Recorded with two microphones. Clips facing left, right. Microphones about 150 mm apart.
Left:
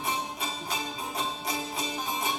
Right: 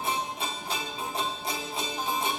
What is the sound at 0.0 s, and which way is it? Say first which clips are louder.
Music: right 1 dB; 30° right (ahead or behind).